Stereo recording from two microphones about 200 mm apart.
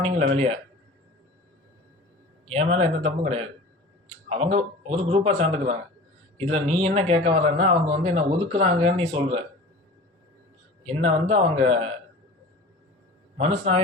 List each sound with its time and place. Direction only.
0.0 s speech: 30° right (ahead or behind)
2.5 s speech: 30° right (ahead or behind)
10.8 s speech: 30° right (ahead or behind)
13.4 s speech: 30° right (ahead or behind)